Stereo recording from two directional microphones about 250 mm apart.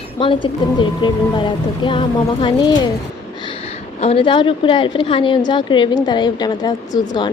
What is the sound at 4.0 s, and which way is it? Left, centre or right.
A woman's voice, left.